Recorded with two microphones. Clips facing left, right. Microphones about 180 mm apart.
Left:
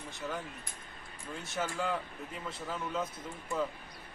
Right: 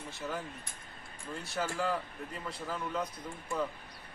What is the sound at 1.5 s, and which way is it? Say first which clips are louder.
Speech: right 1 dB; centre (ahead or behind).